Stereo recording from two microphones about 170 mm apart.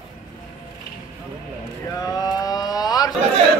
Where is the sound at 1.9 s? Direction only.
20° left (ahead or behind).